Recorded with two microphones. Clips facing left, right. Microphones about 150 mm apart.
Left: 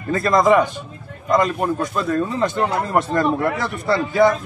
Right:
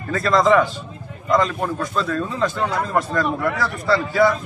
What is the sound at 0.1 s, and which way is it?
A man's voice, 20° left (ahead or behind).